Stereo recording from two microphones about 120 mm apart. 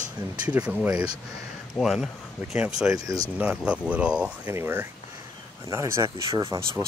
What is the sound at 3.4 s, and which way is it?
Speech, 10° right (ahead or behind).